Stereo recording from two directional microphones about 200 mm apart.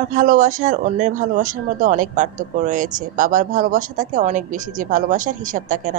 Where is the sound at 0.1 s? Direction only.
45° right (ahead or behind).